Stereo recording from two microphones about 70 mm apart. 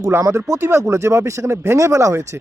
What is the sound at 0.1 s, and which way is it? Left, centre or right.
Speech, right.